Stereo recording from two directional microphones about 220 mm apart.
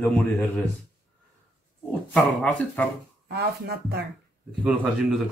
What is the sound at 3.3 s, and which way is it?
Speech, 45° right (ahead or behind).